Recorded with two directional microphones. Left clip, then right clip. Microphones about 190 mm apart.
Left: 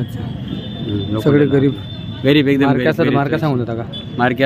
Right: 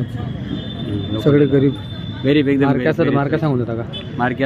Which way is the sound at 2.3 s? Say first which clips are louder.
Left 2 dB; 60° left (ahead or behind).